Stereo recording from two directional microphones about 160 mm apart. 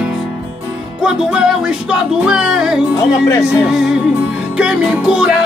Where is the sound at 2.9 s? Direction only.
20° left (ahead or behind).